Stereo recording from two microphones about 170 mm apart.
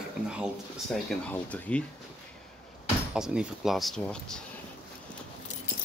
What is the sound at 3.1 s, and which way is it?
Speech, 5° right (ahead or behind).